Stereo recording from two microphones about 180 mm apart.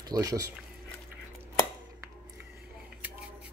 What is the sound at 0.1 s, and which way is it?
Speech, 20° right (ahead or behind).